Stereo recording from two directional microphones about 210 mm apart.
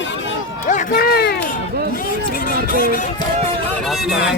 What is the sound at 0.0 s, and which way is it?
Run, 60° left (ahead or behind).